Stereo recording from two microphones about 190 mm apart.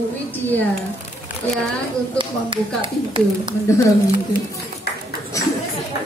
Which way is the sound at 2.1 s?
25° right (ahead or behind).